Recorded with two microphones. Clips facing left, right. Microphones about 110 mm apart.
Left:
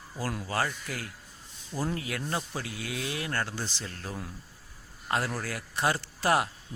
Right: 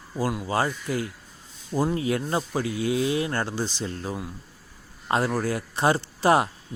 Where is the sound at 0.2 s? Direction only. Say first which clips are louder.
Right 6 dB; 15° right (ahead or behind).